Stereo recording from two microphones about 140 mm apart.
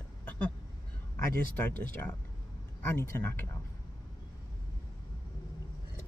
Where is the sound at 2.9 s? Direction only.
15° left (ahead or behind).